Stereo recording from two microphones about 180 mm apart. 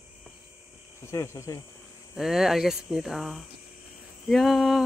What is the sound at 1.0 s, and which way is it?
Speech, 15° left (ahead or behind).